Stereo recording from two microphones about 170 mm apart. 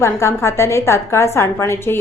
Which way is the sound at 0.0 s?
15° left (ahead or behind).